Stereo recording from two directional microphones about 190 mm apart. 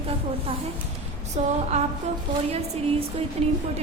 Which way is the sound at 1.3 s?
35° right (ahead or behind).